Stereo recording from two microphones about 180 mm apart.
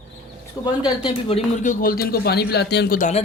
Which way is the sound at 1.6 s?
50° left (ahead or behind).